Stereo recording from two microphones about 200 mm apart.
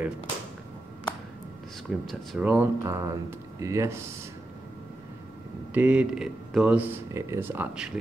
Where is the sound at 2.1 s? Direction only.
5° right (ahead or behind).